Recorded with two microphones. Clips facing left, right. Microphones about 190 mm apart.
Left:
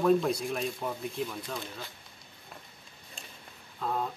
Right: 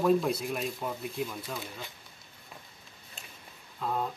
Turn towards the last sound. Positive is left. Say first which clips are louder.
# even
turn(degrees=0)  # may be behind; listen again after turning